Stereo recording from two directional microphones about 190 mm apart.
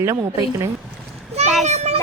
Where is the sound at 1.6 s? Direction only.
35° right (ahead or behind).